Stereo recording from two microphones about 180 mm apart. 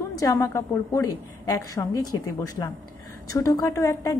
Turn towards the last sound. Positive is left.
turn(degrees=15)  # may be behind; listen again after turning